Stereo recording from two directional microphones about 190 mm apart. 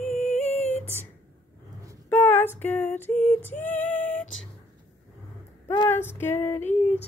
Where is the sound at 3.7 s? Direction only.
10° left (ahead or behind).